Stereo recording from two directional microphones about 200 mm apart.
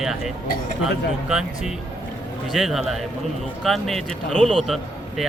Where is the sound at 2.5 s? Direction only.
Centre (ahead or behind).